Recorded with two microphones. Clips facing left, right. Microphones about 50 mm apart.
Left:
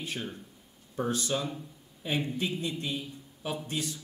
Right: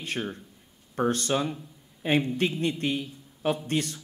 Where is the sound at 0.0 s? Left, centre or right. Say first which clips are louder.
Right 4 dB; right.